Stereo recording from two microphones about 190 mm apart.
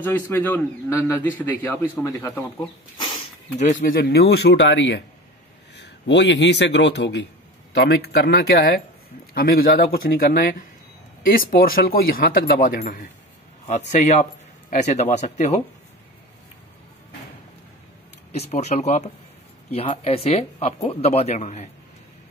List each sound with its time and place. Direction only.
0.0 s a man's voice: 10° left (ahead or behind)
3.8 s a man's voice: 50° left (ahead or behind); by 15.6 s 35° left (ahead or behind)
18.3 s speech: 35° left (ahead or behind)